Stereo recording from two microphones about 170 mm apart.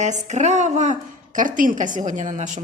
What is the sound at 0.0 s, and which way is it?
Speech, 45° right (ahead or behind).